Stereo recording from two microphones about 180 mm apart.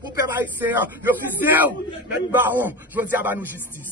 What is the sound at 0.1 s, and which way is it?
A man's voice, 15° right (ahead or behind).